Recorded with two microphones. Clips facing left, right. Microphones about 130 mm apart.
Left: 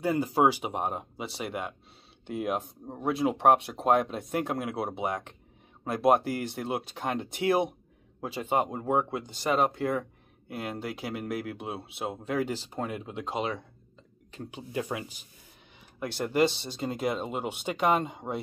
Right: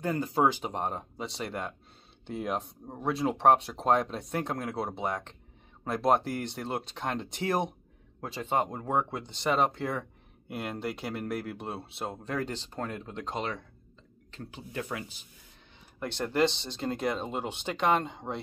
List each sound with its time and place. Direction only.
0.0 s speech: 10° left (ahead or behind)